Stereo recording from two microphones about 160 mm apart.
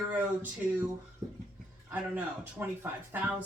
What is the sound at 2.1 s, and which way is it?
A woman's voice, 10° right (ahead or behind).